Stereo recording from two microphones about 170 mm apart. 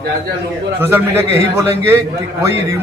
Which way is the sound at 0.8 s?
15° right (ahead or behind).